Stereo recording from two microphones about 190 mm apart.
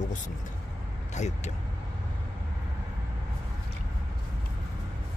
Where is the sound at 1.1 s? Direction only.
35° left (ahead or behind).